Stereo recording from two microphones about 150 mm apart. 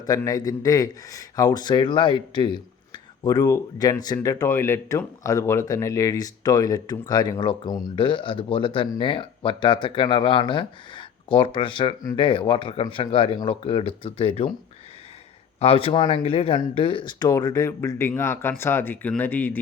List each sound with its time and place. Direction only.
0.3 s speech: 25° left (ahead or behind)
15.5 s speech: 40° left (ahead or behind); by 19.5 s 10° left (ahead or behind)